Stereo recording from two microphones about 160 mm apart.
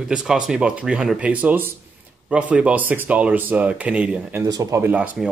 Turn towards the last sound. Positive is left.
turn(degrees=-10)  # may be behind; listen again after turning